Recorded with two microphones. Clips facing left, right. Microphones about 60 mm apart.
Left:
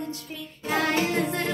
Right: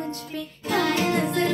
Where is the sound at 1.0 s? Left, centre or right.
Right.